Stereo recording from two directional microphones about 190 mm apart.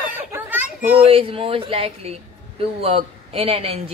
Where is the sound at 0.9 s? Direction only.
30° right (ahead or behind).